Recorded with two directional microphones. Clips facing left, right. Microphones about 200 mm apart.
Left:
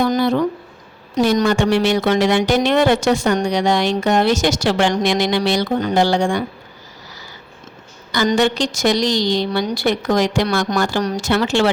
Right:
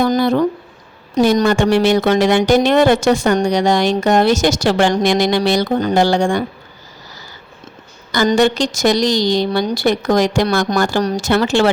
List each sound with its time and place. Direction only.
0.0 s a sound: 45° right (ahead or behind)
1.2 s speech: 45° right (ahead or behind)
8.3 s speech: 45° right (ahead or behind)